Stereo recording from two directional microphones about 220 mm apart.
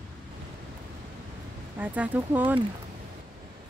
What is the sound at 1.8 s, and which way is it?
Speech, 10° right (ahead or behind).